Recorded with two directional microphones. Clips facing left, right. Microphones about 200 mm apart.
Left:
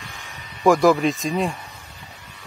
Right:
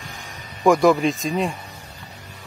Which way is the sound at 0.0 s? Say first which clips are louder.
Right 2 dB; 40° right (ahead or behind).